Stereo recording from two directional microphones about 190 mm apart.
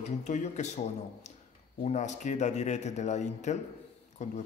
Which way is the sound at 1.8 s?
40° left (ahead or behind).